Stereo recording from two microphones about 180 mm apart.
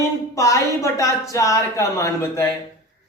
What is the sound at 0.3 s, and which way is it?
Speech, 15° left (ahead or behind).